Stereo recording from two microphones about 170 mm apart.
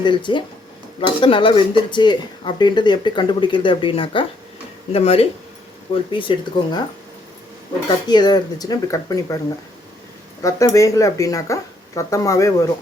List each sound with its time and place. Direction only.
0.0 s speech: 25° left (ahead or behind)
7.9 s speech: 25° left (ahead or behind)
10.4 s speech: 20° left (ahead or behind)